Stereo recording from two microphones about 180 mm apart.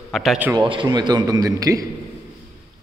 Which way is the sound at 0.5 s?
25° right (ahead or behind).